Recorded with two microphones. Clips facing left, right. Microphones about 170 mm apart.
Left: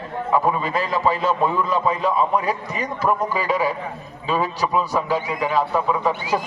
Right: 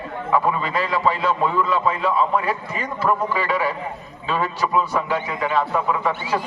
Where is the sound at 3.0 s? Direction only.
15° left (ahead or behind).